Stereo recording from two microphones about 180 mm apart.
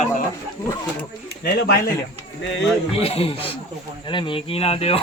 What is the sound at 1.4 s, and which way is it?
Speech, 60° left (ahead or behind).